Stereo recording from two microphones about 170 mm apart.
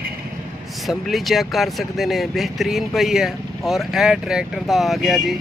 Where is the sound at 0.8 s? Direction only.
Centre (ahead or behind).